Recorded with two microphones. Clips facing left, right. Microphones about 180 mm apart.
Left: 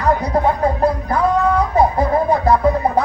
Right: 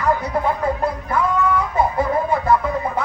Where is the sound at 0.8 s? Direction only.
35° left (ahead or behind).